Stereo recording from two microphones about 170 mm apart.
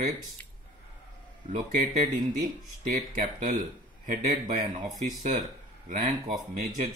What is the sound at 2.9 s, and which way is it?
Speech, 50° right (ahead or behind).